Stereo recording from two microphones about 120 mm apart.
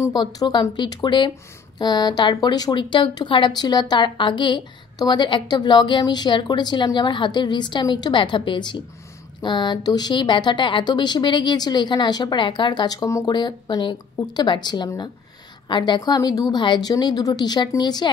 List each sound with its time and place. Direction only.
0.1 s speech: 35° left (ahead or behind)